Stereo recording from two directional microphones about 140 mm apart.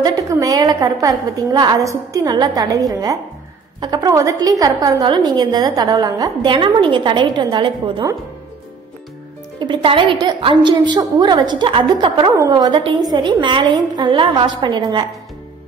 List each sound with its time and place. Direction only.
0.0 s a woman's voice: 25° right (ahead or behind)
6.5 s a woman's voice: 40° right (ahead or behind)
9.6 s a woman's voice: 35° right (ahead or behind)